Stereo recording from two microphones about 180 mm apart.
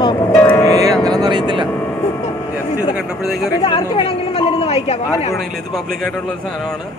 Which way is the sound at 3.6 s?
30° left (ahead or behind).